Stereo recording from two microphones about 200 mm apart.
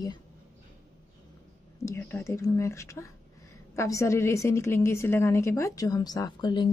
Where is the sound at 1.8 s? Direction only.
15° left (ahead or behind).